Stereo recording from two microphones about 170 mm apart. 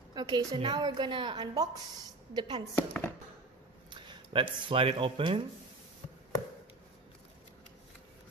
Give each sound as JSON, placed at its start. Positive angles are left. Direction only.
{"t": 0.1, "sound": "a sound", "side_deg": -25}
{"t": 0.6, "sound": "a woman's voice", "side_deg": -25}
{"t": 2.7, "sound": "speech", "side_deg": 15}
{"t": 3.9, "sound": "speech", "side_deg": -30}